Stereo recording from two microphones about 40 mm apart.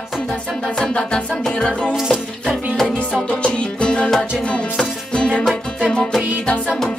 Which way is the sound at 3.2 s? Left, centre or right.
Left.